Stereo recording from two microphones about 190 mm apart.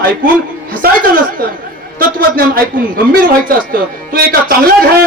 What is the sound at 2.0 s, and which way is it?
A man's voice, 50° right (ahead or behind).